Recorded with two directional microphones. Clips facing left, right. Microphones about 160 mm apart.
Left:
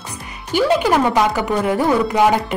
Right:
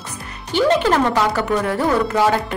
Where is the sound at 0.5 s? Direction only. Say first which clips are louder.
Even; 10° left (ahead or behind).